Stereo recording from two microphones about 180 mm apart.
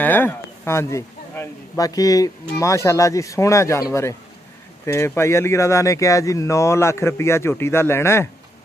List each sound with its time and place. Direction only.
0.0 s speech: 10° left (ahead or behind)
4.8 s speech: 15° left (ahead or behind)